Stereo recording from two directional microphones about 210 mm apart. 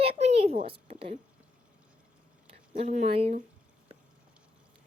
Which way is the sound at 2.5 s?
30° right (ahead or behind).